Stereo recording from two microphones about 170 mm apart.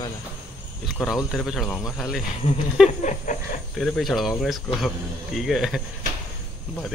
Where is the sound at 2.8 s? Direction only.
45° left (ahead or behind).